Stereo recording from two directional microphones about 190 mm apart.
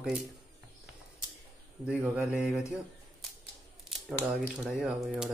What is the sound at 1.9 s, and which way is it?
Speech, 5° right (ahead or behind).